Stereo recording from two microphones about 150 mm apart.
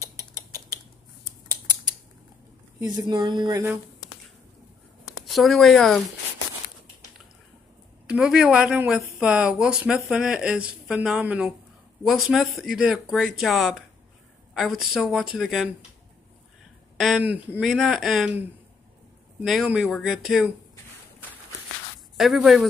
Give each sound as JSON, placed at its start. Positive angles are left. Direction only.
{"t": 0.0, "sound": "a sound", "side_deg": -20}
{"t": 2.8, "sound": "speech", "side_deg": -30}
{"t": 5.2, "sound": "speech", "side_deg": 0}
{"t": 8.1, "sound": "speech", "side_deg": -5}
{"t": 16.9, "sound": "speech", "side_deg": 0}
{"t": 17.2, "sound": "speech", "side_deg": -10}
{"t": 19.4, "sound": "speech", "side_deg": 0}
{"t": 22.1, "sound": "speech", "side_deg": 0}